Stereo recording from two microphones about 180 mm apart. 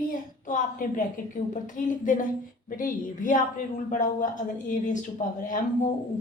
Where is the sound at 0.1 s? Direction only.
50° left (ahead or behind).